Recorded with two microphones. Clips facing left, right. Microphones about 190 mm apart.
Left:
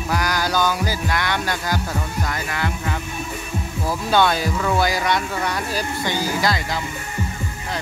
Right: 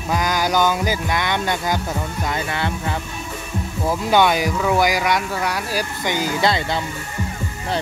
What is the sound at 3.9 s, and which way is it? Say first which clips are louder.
Speech: right 2 dB; 15° right (ahead or behind).